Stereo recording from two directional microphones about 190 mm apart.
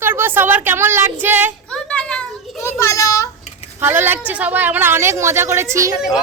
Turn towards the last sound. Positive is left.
turn(degrees=-5)  # may be behind; listen again after turning